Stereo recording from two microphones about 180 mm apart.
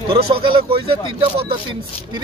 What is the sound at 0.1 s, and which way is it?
Speech, 30° right (ahead or behind).